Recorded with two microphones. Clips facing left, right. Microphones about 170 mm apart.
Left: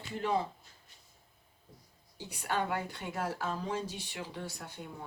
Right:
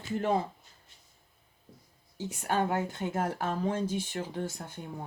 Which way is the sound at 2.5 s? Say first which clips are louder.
Right 4 dB; 45° right (ahead or behind).